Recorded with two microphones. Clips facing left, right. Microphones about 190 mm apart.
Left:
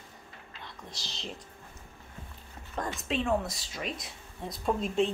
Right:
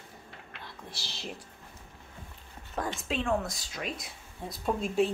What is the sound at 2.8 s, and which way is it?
Speech, 5° right (ahead or behind).